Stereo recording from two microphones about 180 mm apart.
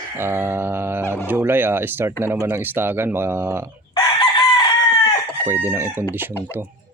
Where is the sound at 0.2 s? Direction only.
10° right (ahead or behind).